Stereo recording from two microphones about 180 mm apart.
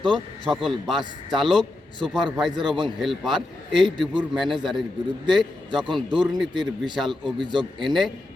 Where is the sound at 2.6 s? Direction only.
25° right (ahead or behind).